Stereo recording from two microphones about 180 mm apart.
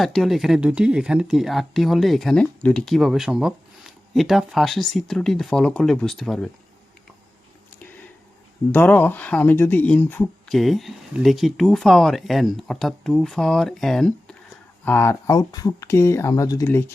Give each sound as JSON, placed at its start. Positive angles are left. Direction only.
{"t": 0.0, "sound": "speech", "side_deg": 0}
{"t": 8.7, "sound": "speech", "side_deg": 10}
{"t": 10.6, "sound": "speech", "side_deg": 0}
{"t": 14.8, "sound": "speech", "side_deg": 15}